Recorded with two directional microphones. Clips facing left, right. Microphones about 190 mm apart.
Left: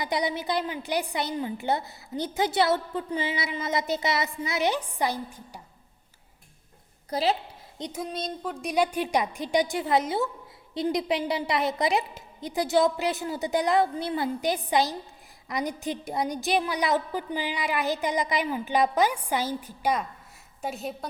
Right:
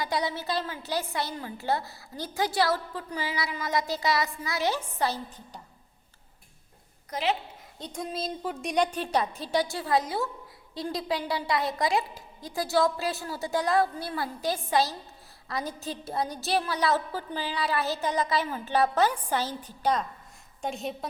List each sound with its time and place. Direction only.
0.0 s a woman's voice: 20° left (ahead or behind)
7.1 s a woman's voice: 35° left (ahead or behind)
7.9 s a woman's voice: centre (ahead or behind)